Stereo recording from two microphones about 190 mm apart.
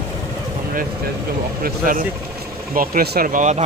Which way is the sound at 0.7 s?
45° right (ahead or behind).